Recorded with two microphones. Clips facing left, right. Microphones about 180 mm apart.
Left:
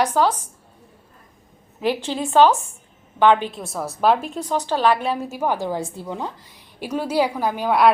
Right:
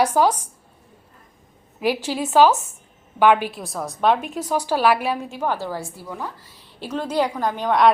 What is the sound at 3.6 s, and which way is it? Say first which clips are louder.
A woman's voice: left 1 dB; 5° left (ahead or behind).